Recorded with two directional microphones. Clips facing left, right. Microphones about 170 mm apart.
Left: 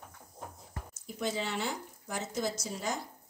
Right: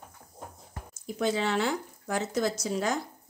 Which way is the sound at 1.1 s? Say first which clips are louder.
Right 7 dB; 90° right.